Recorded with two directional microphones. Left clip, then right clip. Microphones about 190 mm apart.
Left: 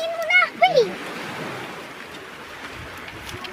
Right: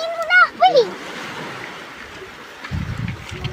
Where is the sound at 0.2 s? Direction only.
10° right (ahead or behind).